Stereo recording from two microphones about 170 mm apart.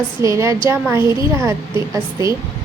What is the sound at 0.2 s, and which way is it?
A woman's voice, 15° right (ahead or behind).